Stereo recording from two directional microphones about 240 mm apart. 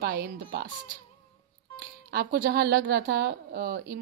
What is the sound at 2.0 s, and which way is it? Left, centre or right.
Speech, right.